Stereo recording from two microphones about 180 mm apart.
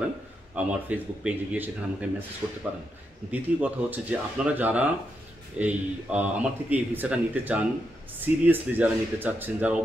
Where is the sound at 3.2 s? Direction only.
10° right (ahead or behind).